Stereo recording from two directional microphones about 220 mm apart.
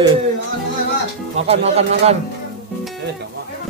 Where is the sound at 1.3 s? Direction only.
30° right (ahead or behind).